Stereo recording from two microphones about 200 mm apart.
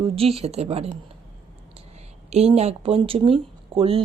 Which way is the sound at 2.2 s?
30° right (ahead or behind).